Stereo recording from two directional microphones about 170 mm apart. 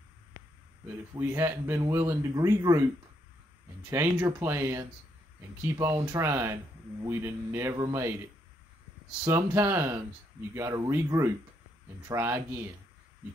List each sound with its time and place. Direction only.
1.1 s speech: 15° right (ahead or behind)
3.9 s speech: 15° right (ahead or behind)